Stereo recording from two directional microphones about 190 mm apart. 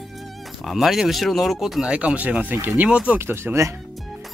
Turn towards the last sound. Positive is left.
turn(degrees=-15)  # may be behind; listen again after turning